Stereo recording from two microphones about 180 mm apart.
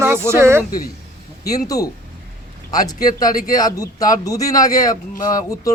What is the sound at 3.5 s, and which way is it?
A man's voice, 20° left (ahead or behind).